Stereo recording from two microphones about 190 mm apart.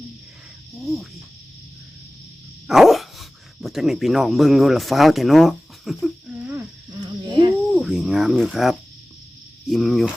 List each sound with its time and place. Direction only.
0.8 s chicken: centre (ahead or behind)
2.6 s dog: centre (ahead or behind)
7.0 s a sound: 20° right (ahead or behind)
7.7 s cricket: centre (ahead or behind)
9.6 s speech: centre (ahead or behind)